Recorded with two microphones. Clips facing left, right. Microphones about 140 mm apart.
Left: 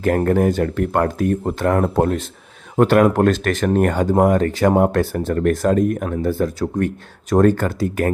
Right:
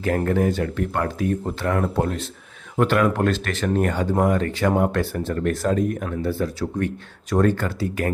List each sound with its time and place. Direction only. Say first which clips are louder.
0.3 s speech: left 4 dB; 45° left (ahead or behind)